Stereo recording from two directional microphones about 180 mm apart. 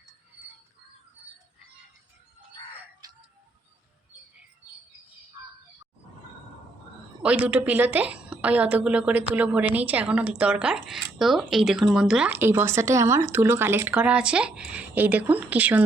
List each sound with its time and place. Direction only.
3.0 s music: 20° right (ahead or behind)
7.2 s speech: 5° right (ahead or behind)